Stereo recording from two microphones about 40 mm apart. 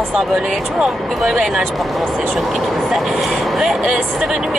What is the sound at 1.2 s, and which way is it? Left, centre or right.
Speech, centre.